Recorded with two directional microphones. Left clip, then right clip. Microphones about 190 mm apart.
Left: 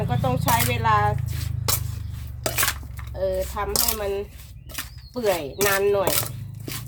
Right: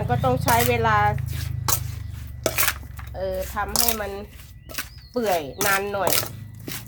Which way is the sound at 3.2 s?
30° right (ahead or behind).